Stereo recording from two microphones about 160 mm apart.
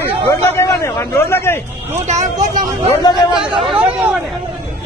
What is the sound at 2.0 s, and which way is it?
Speech, 50° right (ahead or behind).